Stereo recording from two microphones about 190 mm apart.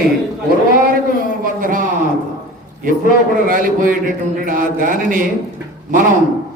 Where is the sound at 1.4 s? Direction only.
45° right (ahead or behind).